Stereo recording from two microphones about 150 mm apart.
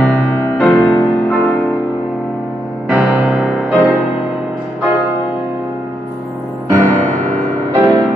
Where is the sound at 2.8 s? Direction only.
5° right (ahead or behind).